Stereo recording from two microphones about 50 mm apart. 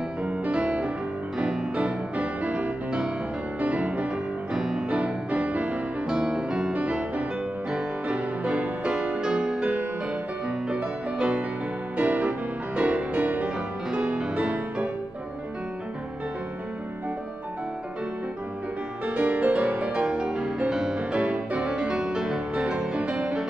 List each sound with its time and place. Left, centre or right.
0.2 s music: right
1.4 s music: centre
1.8 s music: right
4.6 s music: centre
4.8 s music: right
6.0 s music: centre
6.7 s music: right
9.2 s music: centre
10.7 s music: right
19.0 s music: right